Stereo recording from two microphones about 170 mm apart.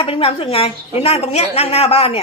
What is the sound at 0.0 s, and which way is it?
A woman's voice, 30° left (ahead or behind).